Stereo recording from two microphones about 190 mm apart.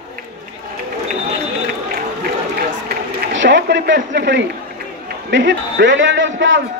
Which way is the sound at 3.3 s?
75° right (ahead or behind).